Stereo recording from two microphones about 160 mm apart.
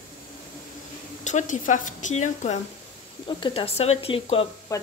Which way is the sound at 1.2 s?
50° left (ahead or behind).